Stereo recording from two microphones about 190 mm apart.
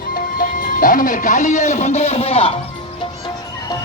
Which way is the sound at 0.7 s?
45° left (ahead or behind).